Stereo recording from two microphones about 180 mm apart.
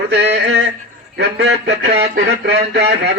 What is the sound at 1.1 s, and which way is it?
A man's voice, 70° right (ahead or behind).